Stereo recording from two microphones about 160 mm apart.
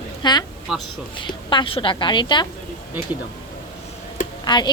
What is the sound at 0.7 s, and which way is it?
Speech, centre (ahead or behind).